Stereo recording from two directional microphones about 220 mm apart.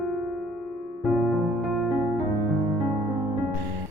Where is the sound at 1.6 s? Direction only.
Centre (ahead or behind).